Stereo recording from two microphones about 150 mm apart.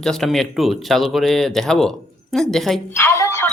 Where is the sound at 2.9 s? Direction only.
15° left (ahead or behind).